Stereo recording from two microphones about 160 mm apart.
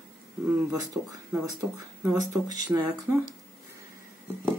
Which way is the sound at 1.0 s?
10° right (ahead or behind).